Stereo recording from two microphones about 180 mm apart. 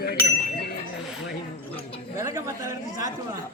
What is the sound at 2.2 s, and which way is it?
Speech, 15° right (ahead or behind).